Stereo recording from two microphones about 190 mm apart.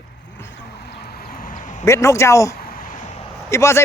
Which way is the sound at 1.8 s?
15° left (ahead or behind).